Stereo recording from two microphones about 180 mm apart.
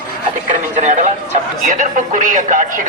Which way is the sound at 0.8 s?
40° right (ahead or behind).